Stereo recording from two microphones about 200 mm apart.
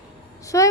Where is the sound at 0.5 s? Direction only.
15° left (ahead or behind).